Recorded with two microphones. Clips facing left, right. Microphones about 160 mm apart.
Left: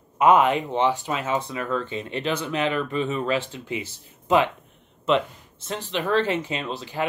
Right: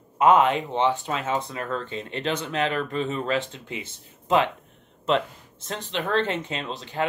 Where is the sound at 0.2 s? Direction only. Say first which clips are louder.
Left 1 dB; 10° left (ahead or behind).